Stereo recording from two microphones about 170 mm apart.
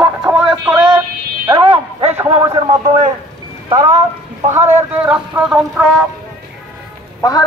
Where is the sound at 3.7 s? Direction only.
20° right (ahead or behind).